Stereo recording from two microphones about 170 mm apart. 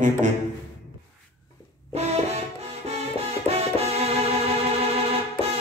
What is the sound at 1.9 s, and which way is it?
Music, 40° right (ahead or behind).